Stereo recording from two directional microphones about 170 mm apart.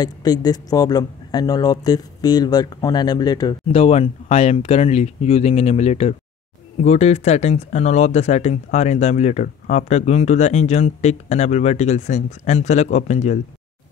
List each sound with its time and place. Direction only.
0.0 s speech: 25° left (ahead or behind)
3.7 s speech: 35° left (ahead or behind)